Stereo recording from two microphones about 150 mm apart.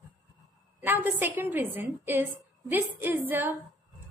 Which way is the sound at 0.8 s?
10° right (ahead or behind).